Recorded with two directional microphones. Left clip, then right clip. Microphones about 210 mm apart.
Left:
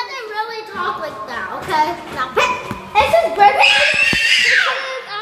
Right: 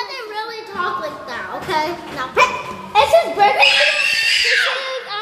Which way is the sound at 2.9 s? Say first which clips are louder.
Even; 20° right (ahead or behind).